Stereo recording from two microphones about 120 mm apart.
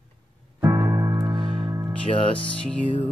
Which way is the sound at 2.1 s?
50° left (ahead or behind).